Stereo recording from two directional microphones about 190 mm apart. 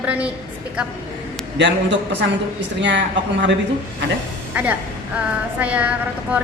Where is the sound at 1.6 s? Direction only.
70° right (ahead or behind).